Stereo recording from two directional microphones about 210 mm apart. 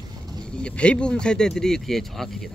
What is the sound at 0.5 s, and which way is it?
Speech, 5° left (ahead or behind).